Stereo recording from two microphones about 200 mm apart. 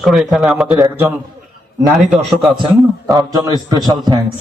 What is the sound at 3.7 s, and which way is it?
Speech, 20° right (ahead or behind).